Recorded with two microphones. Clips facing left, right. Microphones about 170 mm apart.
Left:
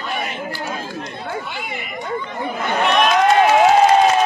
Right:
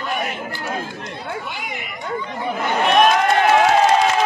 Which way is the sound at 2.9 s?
50° right (ahead or behind).